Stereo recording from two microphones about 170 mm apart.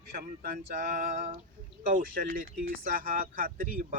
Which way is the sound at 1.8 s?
55° right (ahead or behind).